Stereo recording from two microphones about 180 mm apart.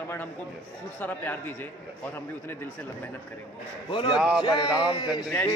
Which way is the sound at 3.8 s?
25° left (ahead or behind).